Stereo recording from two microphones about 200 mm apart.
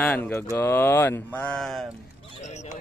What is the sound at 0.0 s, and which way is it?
Speech, 10° left (ahead or behind).